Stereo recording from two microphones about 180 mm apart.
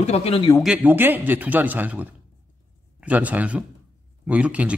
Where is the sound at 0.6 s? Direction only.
5° right (ahead or behind).